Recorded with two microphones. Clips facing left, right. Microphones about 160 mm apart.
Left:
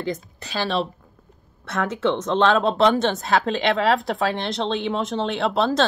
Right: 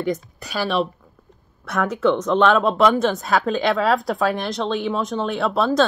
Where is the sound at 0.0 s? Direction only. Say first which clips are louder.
Right 4 dB; 30° left (ahead or behind).